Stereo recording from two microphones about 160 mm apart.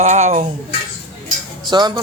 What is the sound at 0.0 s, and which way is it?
Speech, 45° right (ahead or behind).